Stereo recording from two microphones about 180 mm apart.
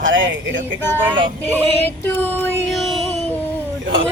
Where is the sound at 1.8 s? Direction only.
10° left (ahead or behind).